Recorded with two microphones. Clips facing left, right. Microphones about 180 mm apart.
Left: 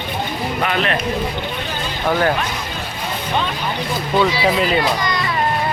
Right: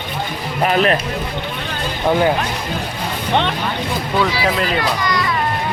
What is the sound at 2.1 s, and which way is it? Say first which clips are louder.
Speech: right 2 dB; 15° right (ahead or behind).